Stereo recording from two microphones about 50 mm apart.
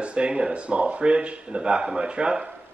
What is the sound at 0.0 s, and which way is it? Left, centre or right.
Speech, right.